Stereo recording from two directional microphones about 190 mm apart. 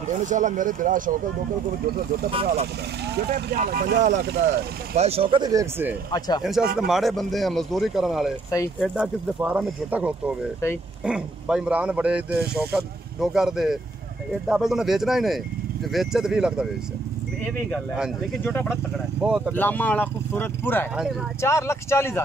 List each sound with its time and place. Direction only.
0.0 s speech: 40° right (ahead or behind)
2.3 s speech: 35° right (ahead or behind)
3.1 s speech: 60° right (ahead or behind)
4.9 s speech: 30° right (ahead or behind); by 5.9 s 15° right (ahead or behind)
6.1 s speech: 20° left (ahead or behind)
6.9 s speech: centre (ahead or behind)
18.4 s speech: 10° left (ahead or behind)
19.2 s speech: 5° right (ahead or behind)
19.5 s speech: 10° left (ahead or behind)
20.9 s speech: centre (ahead or behind)
21.4 s speech: 15° left (ahead or behind)